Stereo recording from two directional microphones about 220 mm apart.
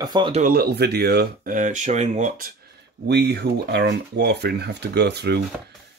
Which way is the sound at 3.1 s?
50° right (ahead or behind).